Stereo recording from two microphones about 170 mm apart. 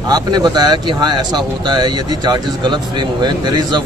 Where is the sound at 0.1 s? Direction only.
25° right (ahead or behind).